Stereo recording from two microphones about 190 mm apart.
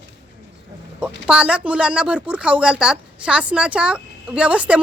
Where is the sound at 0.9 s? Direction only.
5° right (ahead or behind).